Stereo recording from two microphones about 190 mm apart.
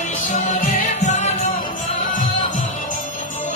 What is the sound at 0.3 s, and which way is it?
Music, 45° left (ahead or behind).